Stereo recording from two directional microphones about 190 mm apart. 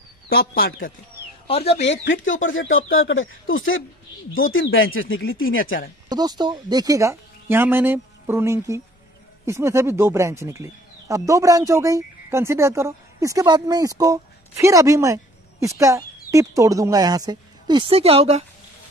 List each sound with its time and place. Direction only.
0.4 s speech: 50° left (ahead or behind)
1.5 s speech: 30° left (ahead or behind)
2.0 s speech: 90° left
6.0 s speech: 20° right (ahead or behind)